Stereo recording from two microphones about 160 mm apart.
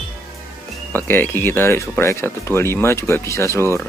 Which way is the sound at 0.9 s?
15° left (ahead or behind).